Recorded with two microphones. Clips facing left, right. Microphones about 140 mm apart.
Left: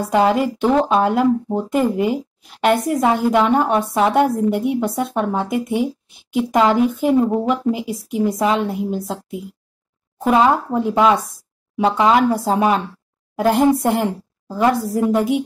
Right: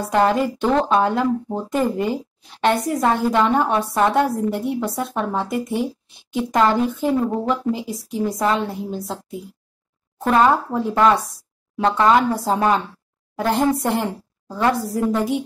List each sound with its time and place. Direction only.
0.1 s speech: 5° left (ahead or behind)
4.1 s speech: centre (ahead or behind)
12.5 s a woman's voice: 10° left (ahead or behind)